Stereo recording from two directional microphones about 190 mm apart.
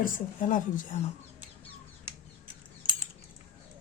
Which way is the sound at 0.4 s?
45° left (ahead or behind).